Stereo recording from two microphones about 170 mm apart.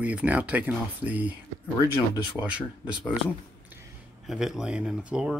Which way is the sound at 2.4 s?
10° right (ahead or behind).